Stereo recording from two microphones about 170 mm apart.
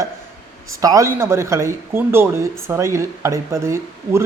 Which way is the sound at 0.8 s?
20° right (ahead or behind).